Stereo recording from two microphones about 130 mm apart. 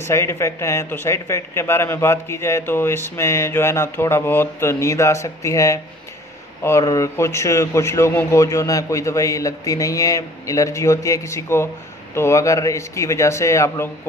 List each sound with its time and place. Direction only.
0.0 s a man's voice: 20° left (ahead or behind)